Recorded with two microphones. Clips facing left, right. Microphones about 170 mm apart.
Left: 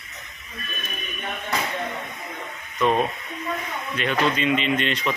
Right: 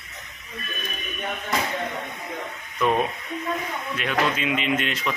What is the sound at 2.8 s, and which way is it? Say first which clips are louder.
A man's voice: left 1 dB; 5° right (ahead or behind).